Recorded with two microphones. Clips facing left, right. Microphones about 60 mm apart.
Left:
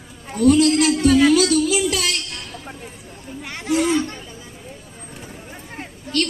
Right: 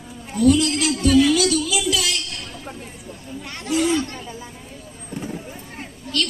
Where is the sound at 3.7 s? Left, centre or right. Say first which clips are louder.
Left 1 dB; left.